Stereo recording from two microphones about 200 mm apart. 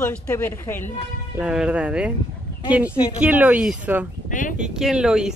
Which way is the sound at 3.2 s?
5° right (ahead or behind).